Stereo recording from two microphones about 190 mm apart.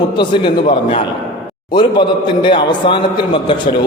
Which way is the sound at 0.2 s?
25° left (ahead or behind).